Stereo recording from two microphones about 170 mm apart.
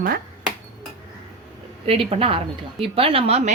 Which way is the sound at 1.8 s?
35° right (ahead or behind).